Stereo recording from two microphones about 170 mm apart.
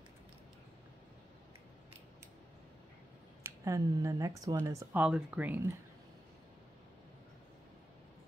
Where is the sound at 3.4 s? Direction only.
20° right (ahead or behind).